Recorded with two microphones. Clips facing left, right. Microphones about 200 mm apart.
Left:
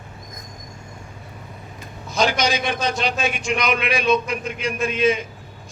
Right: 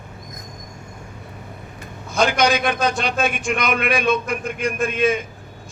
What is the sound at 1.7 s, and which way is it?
A man's voice, 55° right (ahead or behind).